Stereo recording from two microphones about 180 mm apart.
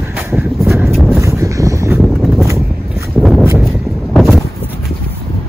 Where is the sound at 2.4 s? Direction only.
15° right (ahead or behind).